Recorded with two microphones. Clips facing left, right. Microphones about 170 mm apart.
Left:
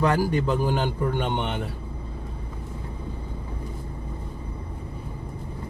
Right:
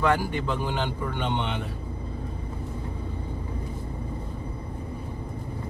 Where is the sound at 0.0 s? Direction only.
40° left (ahead or behind).